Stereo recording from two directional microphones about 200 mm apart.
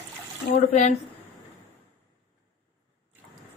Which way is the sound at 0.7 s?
35° left (ahead or behind).